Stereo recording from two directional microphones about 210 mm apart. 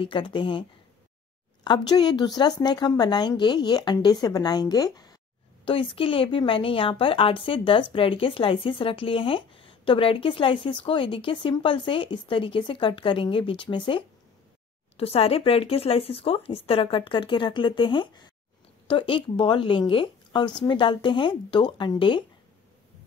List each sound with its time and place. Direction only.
0.0 s a woman's voice: 25° left (ahead or behind)